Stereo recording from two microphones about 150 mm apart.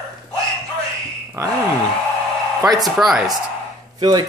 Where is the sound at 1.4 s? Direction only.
20° right (ahead or behind).